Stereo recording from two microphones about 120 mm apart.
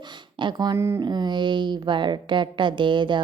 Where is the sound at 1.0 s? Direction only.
35° right (ahead or behind).